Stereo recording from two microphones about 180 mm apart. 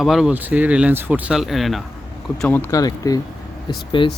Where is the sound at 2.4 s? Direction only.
10° left (ahead or behind).